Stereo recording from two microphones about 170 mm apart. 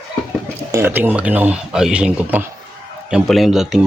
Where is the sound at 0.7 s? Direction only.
15° right (ahead or behind).